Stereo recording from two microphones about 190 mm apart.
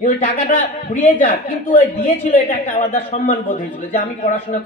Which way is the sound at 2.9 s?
35° left (ahead or behind).